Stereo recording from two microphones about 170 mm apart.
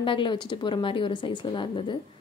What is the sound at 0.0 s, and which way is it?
Speech, 30° left (ahead or behind).